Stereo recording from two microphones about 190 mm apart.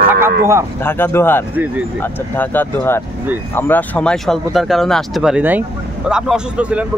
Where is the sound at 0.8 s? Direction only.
10° left (ahead or behind).